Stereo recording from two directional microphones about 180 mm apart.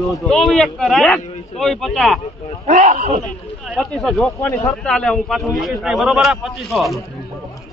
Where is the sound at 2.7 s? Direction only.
45° right (ahead or behind).